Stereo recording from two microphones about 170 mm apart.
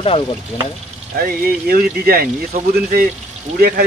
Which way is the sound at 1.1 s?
60° right (ahead or behind).